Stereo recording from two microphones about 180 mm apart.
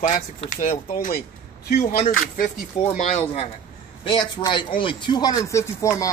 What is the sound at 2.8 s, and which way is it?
Speech, 40° left (ahead or behind).